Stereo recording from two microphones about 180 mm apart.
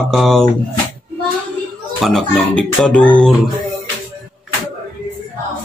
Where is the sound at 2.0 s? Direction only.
Centre (ahead or behind).